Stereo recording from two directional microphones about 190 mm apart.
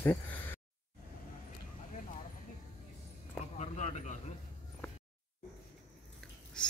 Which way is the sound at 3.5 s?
35° left (ahead or behind).